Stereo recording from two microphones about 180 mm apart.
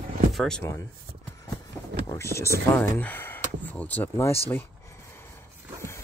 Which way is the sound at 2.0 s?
15° left (ahead or behind).